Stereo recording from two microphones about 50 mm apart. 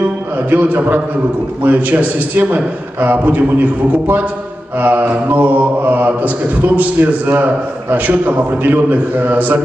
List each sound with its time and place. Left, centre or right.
0.5 s mantra: right
4.7 s mantra: right